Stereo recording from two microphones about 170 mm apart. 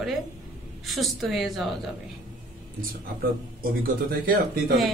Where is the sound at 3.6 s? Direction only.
55° right (ahead or behind).